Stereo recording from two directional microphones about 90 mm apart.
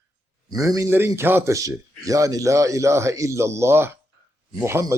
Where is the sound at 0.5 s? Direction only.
40° right (ahead or behind).